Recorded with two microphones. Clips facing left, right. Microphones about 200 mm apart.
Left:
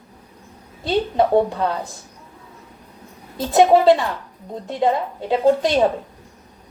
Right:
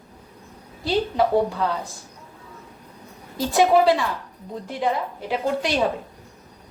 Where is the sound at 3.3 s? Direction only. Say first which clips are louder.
Left 3 dB; 25° left (ahead or behind).